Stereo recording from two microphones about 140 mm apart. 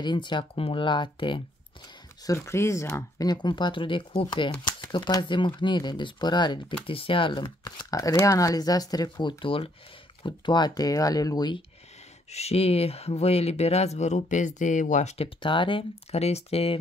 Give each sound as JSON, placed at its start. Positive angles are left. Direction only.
{"t": 0.0, "sound": "speech", "side_deg": 35}
{"t": 2.2, "sound": "speech", "side_deg": 20}
{"t": 12.3, "sound": "speech", "side_deg": 50}